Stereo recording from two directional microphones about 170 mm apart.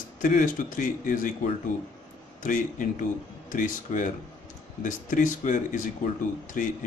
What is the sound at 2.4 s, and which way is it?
Speech, 50° left (ahead or behind).